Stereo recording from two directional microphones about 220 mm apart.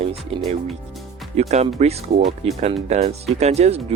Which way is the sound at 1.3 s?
30° right (ahead or behind).